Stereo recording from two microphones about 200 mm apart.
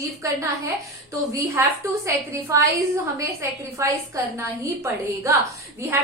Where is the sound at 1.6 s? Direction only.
15° right (ahead or behind).